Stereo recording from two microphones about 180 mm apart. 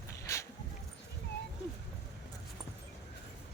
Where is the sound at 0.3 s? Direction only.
15° left (ahead or behind).